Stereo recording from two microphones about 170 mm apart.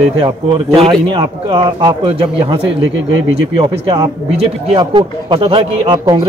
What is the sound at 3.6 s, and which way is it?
Speech, 30° right (ahead or behind).